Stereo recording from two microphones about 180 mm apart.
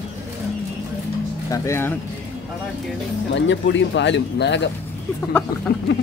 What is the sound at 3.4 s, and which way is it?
Speech, 90° left.